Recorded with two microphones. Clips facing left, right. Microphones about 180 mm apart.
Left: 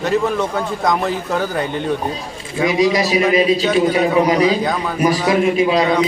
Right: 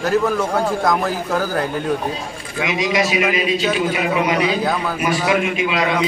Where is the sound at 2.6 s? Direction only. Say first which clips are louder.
Left 4 dB; 35° left (ahead or behind).